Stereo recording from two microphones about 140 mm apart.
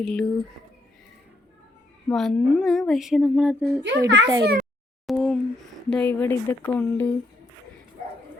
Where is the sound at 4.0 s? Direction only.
25° right (ahead or behind).